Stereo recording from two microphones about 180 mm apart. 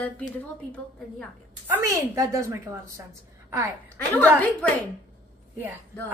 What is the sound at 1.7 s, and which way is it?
A woman's voice, 15° right (ahead or behind).